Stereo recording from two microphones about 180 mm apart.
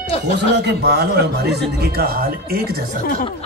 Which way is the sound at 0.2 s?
65° right (ahead or behind).